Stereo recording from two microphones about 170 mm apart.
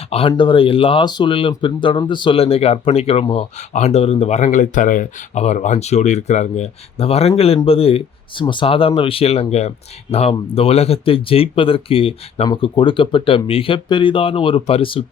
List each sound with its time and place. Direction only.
0.1 s speech: 30° left (ahead or behind)